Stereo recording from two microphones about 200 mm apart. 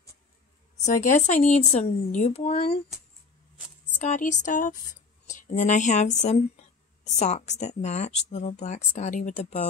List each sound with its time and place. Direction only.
0.8 s speech: 40° left (ahead or behind)
4.0 s speech: 35° left (ahead or behind)